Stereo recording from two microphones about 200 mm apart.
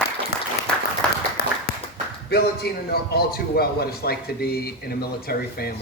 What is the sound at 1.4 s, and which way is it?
Clapping, 50° left (ahead or behind).